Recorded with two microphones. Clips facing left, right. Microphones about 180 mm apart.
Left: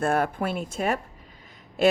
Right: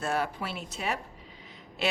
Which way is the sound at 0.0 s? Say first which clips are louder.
Left 6 dB; 50° left (ahead or behind).